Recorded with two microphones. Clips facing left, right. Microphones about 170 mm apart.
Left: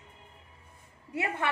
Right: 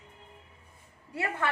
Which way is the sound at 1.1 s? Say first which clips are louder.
Even; 20° left (ahead or behind).